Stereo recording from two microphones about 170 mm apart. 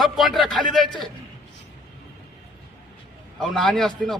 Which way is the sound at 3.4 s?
Centre (ahead or behind).